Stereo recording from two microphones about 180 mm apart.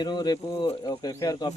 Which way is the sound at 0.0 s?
25° left (ahead or behind).